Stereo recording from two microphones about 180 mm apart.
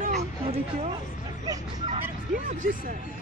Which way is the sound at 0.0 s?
40° right (ahead or behind).